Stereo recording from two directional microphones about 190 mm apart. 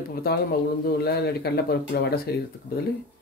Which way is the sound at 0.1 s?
55° left (ahead or behind).